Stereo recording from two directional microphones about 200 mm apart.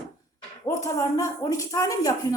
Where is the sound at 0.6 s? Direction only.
15° left (ahead or behind).